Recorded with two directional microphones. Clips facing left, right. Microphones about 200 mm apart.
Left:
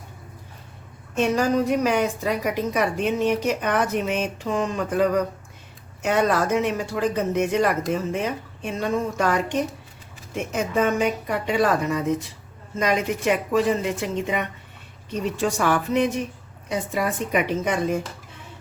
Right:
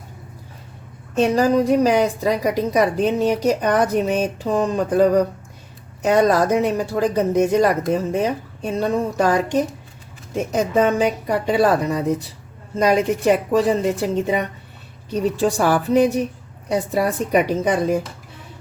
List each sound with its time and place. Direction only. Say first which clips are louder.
1.1 s a woman's voice: right 4 dB; 35° right (ahead or behind)